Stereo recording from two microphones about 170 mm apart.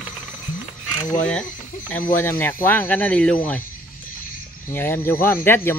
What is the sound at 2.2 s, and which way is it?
Speech, 10° left (ahead or behind).